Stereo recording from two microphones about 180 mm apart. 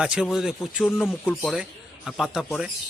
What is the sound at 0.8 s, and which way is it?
Speech, 10° left (ahead or behind).